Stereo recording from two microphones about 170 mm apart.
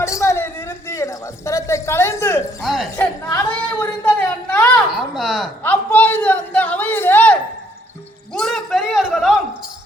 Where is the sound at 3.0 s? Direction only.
10° left (ahead or behind).